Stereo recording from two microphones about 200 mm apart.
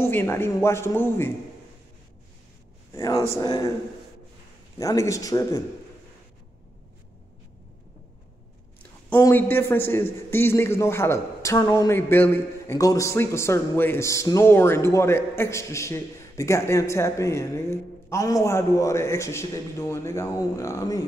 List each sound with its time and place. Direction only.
0.0 s a man's voice: 10° left (ahead or behind)
2.9 s a man's voice: 15° left (ahead or behind)
4.7 s a man's voice: 15° left (ahead or behind)
9.1 s a man's voice: 10° left (ahead or behind)